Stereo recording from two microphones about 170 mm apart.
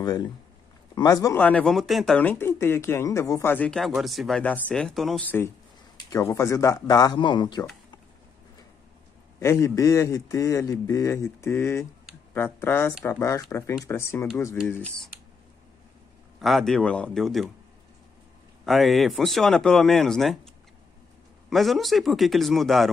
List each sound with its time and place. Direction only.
0.0 s speech: 25° left (ahead or behind)
1.4 s speech: 5° left (ahead or behind); by 7.6 s 25° left (ahead or behind)
9.4 s speech: 15° left (ahead or behind)
16.3 s speech: centre (ahead or behind)
18.7 s speech: centre (ahead or behind)
21.5 s speech: centre (ahead or behind)